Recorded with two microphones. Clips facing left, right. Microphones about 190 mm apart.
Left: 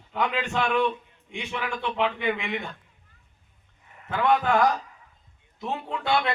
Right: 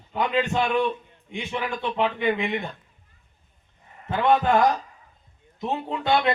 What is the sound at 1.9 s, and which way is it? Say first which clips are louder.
Speech: right 3 dB; 40° right (ahead or behind).